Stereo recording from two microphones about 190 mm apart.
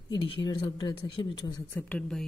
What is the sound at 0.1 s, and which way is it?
Speech, 25° left (ahead or behind).